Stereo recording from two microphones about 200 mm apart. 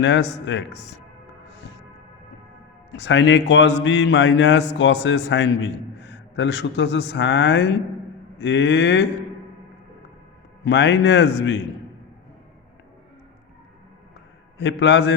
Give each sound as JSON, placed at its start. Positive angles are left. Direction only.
{"t": 0.0, "sound": "a man's voice", "side_deg": 65}
{"t": 2.9, "sound": "a man's voice", "side_deg": 60}
{"t": 10.6, "sound": "a man's voice", "side_deg": 60}
{"t": 14.6, "sound": "a man's voice", "side_deg": 60}